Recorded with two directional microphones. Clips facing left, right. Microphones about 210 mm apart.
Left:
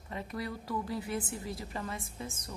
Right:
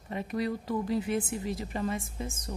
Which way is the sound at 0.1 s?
20° right (ahead or behind).